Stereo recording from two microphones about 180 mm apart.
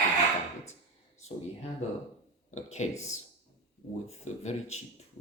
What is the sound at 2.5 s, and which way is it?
Speech, 40° left (ahead or behind).